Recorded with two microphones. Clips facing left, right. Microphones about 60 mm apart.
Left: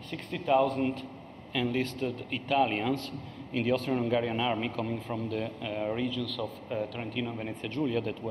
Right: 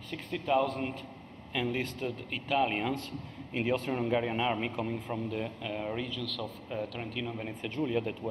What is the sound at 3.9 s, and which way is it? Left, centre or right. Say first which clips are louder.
Speech: left 2 dB; centre.